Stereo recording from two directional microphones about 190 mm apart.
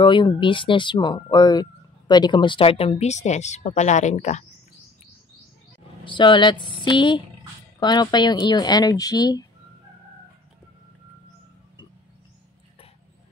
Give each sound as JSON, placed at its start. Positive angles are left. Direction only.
{"t": 0.0, "sound": "speech", "side_deg": 25}
{"t": 6.0, "sound": "speech", "side_deg": 25}